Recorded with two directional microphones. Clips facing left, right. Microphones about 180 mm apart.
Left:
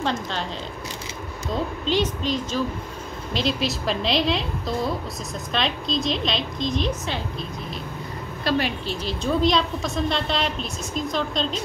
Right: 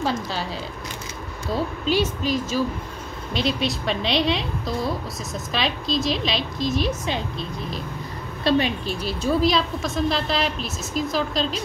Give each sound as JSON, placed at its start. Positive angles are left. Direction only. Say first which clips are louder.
{"t": 0.0, "sound": "a woman's voice", "louder": "right 1 dB", "side_deg": -5}
{"t": 1.5, "sound": "a woman's voice", "louder": "right 1 dB", "side_deg": -10}
{"t": 8.5, "sound": "a woman's voice", "louder": "right 3 dB", "side_deg": -20}
{"t": 9.0, "sound": "a woman's voice", "louder": "right 1 dB", "side_deg": -5}